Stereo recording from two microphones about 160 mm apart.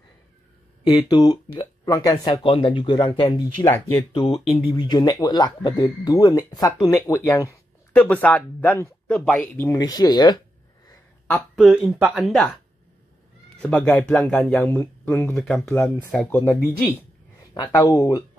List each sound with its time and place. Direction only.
0.8 s speech: 25° left (ahead or behind)
4.1 s speech: 35° left (ahead or behind); by 9.8 s 10° left (ahead or behind)
9.8 s speech: 25° left (ahead or behind)
11.5 s speech: 5° right (ahead or behind)
13.6 s speech: 10° left (ahead or behind)
15.3 s speech: centre (ahead or behind)
17.6 s speech: 20° left (ahead or behind)